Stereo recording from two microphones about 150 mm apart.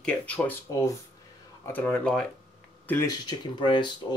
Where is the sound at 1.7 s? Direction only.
10° left (ahead or behind).